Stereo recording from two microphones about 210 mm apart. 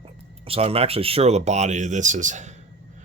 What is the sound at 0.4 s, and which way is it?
Speech, 30° right (ahead or behind).